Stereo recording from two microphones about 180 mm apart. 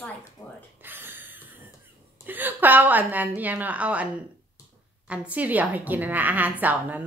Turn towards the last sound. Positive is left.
turn(degrees=-10)  # may be behind; listen again after turning